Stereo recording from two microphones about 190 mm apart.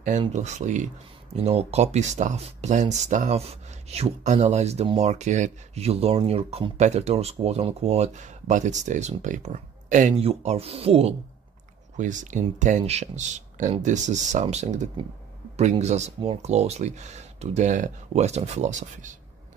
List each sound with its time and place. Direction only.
0.3 s speech: 40° right (ahead or behind)
12.0 s speech: 40° right (ahead or behind)